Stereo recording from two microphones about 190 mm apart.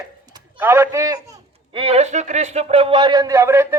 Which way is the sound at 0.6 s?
15° right (ahead or behind).